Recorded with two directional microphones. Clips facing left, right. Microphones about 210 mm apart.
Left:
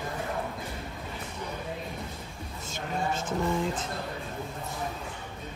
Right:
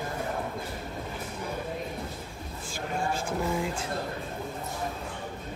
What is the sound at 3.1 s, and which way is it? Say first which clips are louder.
Speech: left 2 dB; 5° right (ahead or behind).